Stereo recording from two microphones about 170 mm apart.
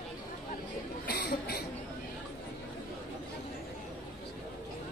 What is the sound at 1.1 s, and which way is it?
Cough, 70° left (ahead or behind).